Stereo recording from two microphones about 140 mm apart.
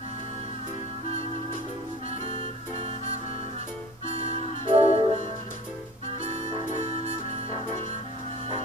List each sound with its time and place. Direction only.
2.2 s music: 45° right (ahead or behind)
7.1 s music: 45° right (ahead or behind)